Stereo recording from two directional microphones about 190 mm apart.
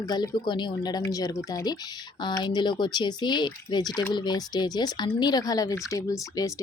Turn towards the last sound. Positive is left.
turn(degrees=15)  # may be behind; listen again after turning